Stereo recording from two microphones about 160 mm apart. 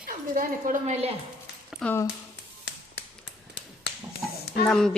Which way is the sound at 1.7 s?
5° left (ahead or behind).